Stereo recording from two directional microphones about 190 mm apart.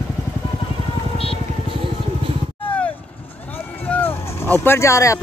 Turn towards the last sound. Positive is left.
turn(degrees=15)  # may be behind; listen again after turning